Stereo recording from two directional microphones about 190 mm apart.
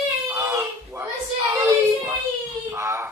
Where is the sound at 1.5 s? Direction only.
15° right (ahead or behind).